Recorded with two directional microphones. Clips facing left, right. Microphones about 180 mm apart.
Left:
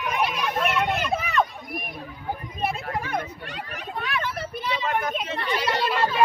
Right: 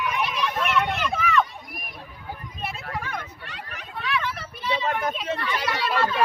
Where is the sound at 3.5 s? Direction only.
45° left (ahead or behind).